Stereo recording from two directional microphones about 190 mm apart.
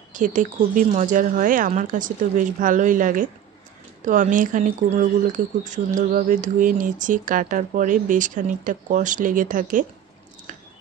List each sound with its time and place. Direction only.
0.1 s speech: 40° right (ahead or behind)